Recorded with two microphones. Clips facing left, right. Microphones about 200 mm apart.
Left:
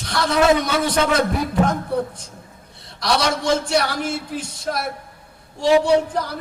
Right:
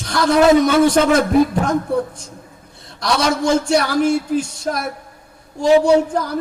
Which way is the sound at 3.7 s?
45° right (ahead or behind).